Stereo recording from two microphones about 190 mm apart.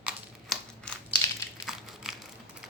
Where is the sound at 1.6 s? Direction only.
Centre (ahead or behind).